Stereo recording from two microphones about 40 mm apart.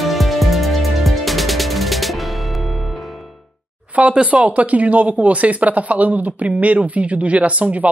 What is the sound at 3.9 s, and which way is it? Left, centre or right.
Speech, right.